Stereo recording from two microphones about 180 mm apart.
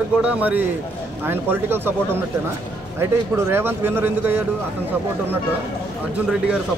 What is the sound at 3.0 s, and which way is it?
A man's voice, 15° right (ahead or behind).